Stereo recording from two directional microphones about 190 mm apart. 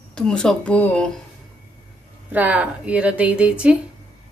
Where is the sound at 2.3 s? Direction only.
10° right (ahead or behind).